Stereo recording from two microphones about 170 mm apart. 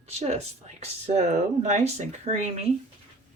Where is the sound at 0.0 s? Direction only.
40° right (ahead or behind).